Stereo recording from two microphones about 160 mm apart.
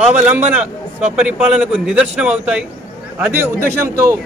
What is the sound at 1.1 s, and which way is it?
A man's voice, 5° right (ahead or behind).